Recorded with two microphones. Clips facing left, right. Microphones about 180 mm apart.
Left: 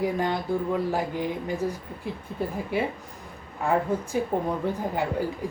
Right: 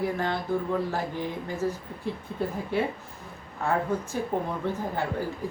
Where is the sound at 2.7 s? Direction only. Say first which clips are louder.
Even; 10° left (ahead or behind).